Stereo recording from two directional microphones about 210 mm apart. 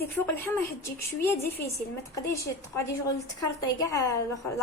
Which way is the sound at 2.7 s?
15° left (ahead or behind).